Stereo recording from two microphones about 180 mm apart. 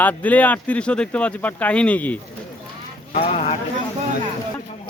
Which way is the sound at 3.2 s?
35° left (ahead or behind).